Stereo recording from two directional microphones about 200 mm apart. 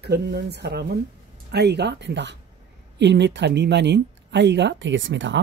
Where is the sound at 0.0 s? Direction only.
55° right (ahead or behind).